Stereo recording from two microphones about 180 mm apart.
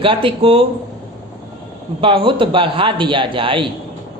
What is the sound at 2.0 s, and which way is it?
Speech, 30° right (ahead or behind).